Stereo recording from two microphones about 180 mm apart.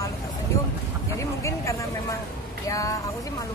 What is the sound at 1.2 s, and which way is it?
Speech, 15° left (ahead or behind).